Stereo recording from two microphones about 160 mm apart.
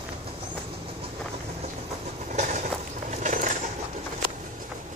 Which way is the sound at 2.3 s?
50° right (ahead or behind).